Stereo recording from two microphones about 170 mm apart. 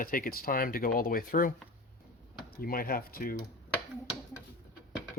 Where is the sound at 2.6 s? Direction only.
60° left (ahead or behind).